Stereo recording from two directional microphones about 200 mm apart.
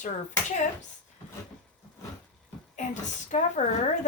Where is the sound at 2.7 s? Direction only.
35° left (ahead or behind).